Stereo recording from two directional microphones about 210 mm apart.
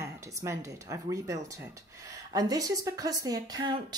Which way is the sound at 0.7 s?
15° right (ahead or behind).